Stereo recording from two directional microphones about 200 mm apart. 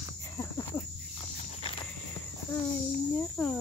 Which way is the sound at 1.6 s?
25° left (ahead or behind).